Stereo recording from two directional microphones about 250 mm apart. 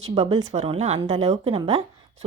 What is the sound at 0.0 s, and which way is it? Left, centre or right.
A woman's voice, right.